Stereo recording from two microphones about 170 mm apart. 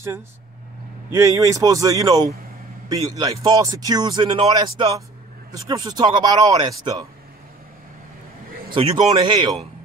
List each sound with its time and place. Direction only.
1.1 s a man's voice: 15° right (ahead or behind)
8.7 s a man's voice: 30° right (ahead or behind)